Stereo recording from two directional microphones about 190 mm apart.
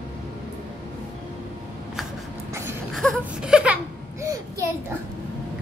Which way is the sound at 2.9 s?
Centre (ahead or behind).